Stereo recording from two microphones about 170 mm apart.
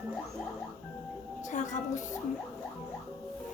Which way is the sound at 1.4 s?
45° left (ahead or behind).